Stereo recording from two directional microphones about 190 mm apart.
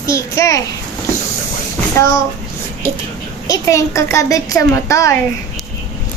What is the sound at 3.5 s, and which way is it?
A child's voice, 15° left (ahead or behind).